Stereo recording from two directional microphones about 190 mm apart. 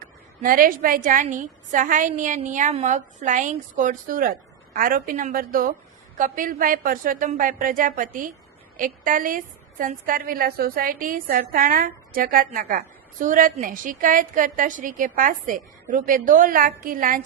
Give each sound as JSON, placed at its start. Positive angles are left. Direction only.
{"t": 0.4, "sound": "a woman's voice", "side_deg": -45}